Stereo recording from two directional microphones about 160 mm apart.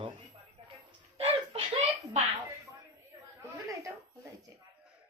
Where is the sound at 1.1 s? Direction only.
35° right (ahead or behind).